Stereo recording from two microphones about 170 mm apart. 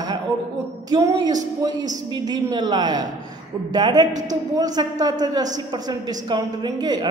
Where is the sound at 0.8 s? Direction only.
20° right (ahead or behind).